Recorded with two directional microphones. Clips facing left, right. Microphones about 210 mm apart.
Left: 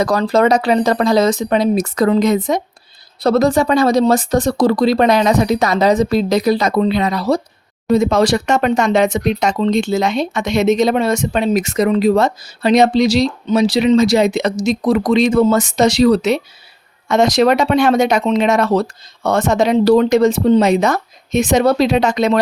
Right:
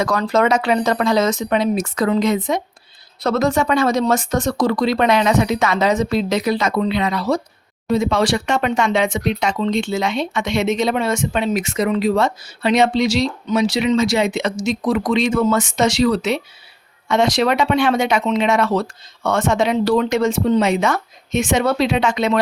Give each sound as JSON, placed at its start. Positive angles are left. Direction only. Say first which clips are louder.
{"t": 0.0, "sound": "speech", "louder": "left 4 dB", "side_deg": 35}